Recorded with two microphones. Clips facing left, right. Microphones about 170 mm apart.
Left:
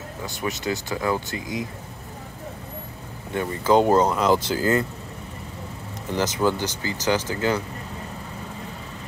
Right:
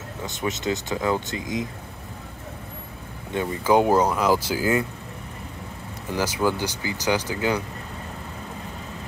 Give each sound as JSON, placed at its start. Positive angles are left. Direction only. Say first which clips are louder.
{"t": 0.2, "sound": "speech", "louder": "right 1 dB", "side_deg": -20}
{"t": 3.3, "sound": "speech", "louder": "left 1 dB", "side_deg": -10}
{"t": 6.1, "sound": "speech", "louder": "left 1 dB", "side_deg": -10}